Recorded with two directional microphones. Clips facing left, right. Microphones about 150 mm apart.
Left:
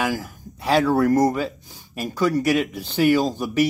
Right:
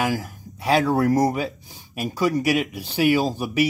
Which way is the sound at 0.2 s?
15° right (ahead or behind).